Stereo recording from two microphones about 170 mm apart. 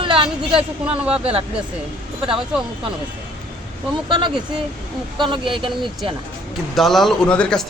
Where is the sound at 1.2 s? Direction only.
35° right (ahead or behind).